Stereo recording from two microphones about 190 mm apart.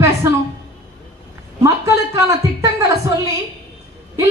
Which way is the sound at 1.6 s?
15° right (ahead or behind).